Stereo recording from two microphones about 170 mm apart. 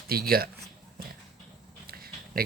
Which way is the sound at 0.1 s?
60° right (ahead or behind).